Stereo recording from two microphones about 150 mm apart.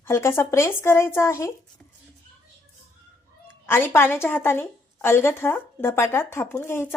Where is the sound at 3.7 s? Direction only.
15° left (ahead or behind).